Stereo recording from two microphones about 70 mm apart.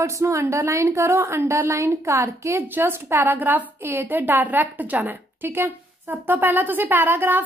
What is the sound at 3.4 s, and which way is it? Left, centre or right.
A woman's voice, right.